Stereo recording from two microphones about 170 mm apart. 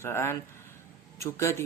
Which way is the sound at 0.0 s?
15° left (ahead or behind).